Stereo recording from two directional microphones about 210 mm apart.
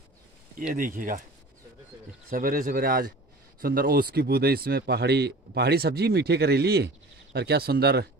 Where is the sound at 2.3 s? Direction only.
40° right (ahead or behind).